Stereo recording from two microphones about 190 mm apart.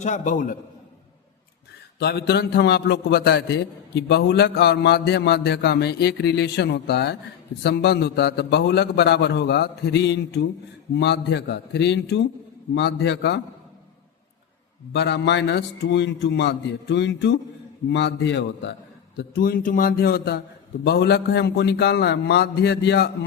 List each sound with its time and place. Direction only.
0.0 s a man's voice: 40° left (ahead or behind)
2.0 s a man's voice: 60° left (ahead or behind)
14.9 s a man's voice: 65° left (ahead or behind)
19.1 s a man's voice: 50° left (ahead or behind)